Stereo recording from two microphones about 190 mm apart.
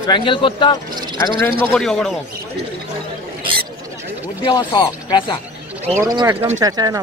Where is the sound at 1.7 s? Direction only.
5° left (ahead or behind).